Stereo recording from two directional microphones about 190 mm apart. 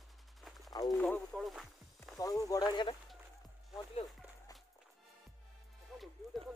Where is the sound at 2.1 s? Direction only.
20° left (ahead or behind).